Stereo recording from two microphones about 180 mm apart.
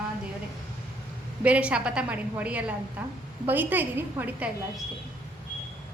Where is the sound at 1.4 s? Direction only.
5° right (ahead or behind).